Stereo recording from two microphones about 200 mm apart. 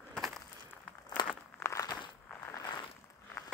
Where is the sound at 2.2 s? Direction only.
10° left (ahead or behind).